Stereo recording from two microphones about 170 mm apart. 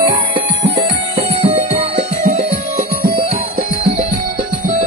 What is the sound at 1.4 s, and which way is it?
Music, 35° right (ahead or behind).